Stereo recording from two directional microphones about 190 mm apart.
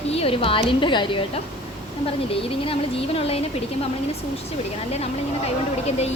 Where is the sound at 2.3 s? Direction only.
30° left (ahead or behind).